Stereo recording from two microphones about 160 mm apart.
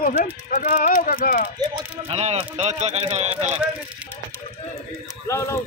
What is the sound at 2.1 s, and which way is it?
A man's voice, 40° right (ahead or behind).